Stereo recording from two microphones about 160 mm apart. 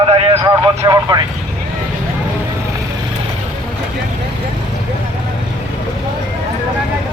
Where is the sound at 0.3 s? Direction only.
25° right (ahead or behind).